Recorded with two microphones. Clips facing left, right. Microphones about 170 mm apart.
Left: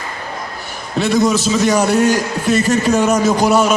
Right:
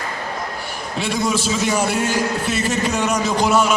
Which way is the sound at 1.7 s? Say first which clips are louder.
Left 7 dB; 40° left (ahead or behind).